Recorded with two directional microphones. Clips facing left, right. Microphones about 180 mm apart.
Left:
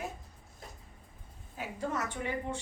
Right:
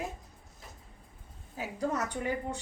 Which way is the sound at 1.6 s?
40° right (ahead or behind).